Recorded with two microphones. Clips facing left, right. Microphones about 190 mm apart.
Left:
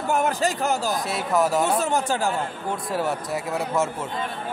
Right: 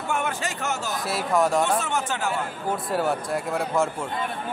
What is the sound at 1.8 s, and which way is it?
Speech, 35° left (ahead or behind).